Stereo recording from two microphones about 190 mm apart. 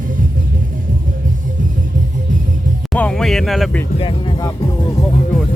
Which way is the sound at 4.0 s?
30° left (ahead or behind).